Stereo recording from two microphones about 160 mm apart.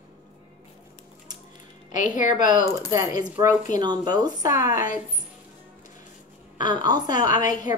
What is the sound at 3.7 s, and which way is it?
Speech, 25° right (ahead or behind).